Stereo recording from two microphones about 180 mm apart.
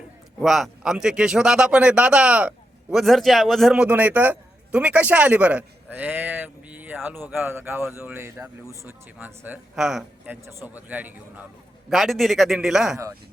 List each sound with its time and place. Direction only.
0.3 s a man's voice: centre (ahead or behind)